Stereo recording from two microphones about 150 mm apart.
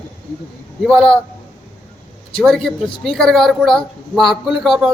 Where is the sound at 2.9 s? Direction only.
35° left (ahead or behind).